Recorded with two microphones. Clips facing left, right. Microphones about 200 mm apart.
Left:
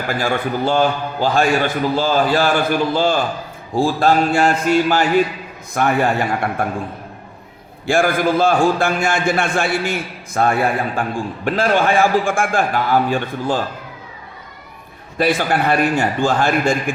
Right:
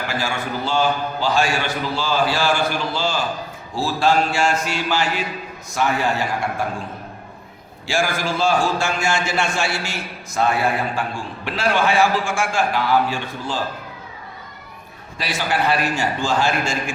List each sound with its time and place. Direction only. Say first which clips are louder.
0.1 s a man's voice: left 9 dB; 55° left (ahead or behind)
7.9 s a man's voice: left 6 dB; 55° left (ahead or behind)
15.2 s a man's voice: left 6 dB; 55° left (ahead or behind)